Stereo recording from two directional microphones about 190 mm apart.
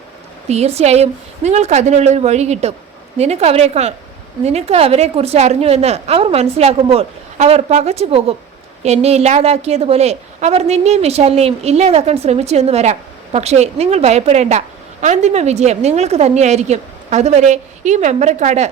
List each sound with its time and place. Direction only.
0.4 s a woman's voice: 35° right (ahead or behind)